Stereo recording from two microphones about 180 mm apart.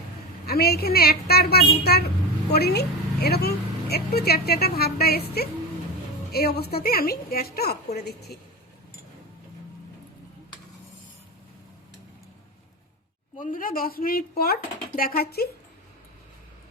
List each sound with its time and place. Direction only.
0.4 s a woman's voice: 60° left (ahead or behind)
6.3 s a woman's voice: 60° left (ahead or behind)
13.4 s a woman's voice: 50° left (ahead or behind)